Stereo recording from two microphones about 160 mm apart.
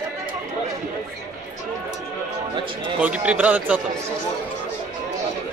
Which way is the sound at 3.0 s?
10° right (ahead or behind).